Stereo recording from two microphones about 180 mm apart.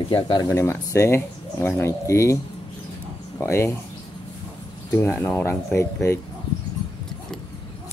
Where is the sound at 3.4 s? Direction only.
15° left (ahead or behind).